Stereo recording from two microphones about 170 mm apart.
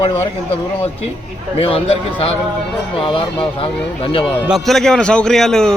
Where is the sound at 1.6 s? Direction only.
35° left (ahead or behind).